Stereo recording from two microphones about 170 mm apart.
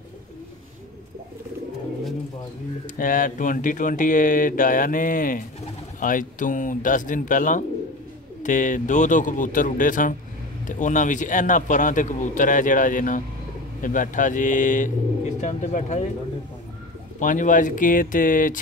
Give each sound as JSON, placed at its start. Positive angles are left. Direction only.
{"t": 3.0, "sound": "a man's voice", "side_deg": 50}
{"t": 17.2, "sound": "a man's voice", "side_deg": 50}